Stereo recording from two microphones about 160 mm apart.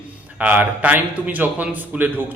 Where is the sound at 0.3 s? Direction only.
10° right (ahead or behind).